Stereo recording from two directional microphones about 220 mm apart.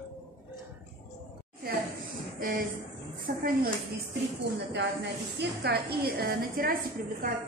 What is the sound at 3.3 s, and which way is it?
Speech, 45° right (ahead or behind).